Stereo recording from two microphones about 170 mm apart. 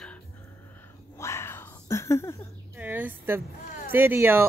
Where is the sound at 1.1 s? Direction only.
15° left (ahead or behind).